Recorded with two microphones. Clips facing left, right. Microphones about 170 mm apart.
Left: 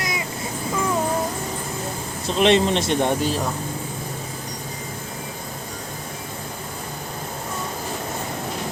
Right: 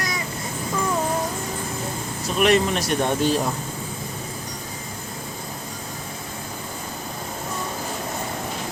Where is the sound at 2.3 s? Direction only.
25° left (ahead or behind).